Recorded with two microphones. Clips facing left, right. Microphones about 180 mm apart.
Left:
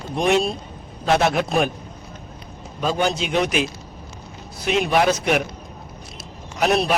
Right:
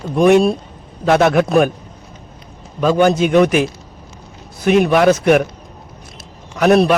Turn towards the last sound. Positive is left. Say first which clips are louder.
# right 8 dB
turn(degrees=-55)  # may be behind; listen again after turning